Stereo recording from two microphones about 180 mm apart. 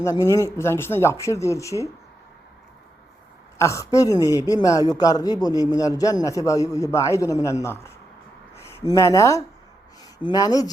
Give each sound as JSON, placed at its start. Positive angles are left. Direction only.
{"t": 0.0, "sound": "speech", "side_deg": 15}
{"t": 3.6, "sound": "a man's voice", "side_deg": 15}